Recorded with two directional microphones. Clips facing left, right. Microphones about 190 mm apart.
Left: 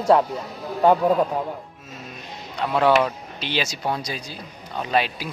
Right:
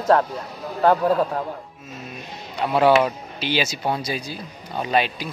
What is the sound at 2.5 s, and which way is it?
Speech, 5° right (ahead or behind).